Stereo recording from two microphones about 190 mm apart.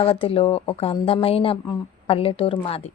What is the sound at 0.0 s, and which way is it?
A woman's voice, 30° left (ahead or behind).